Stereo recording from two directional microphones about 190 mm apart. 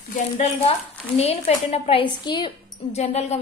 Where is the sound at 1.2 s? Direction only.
35° left (ahead or behind).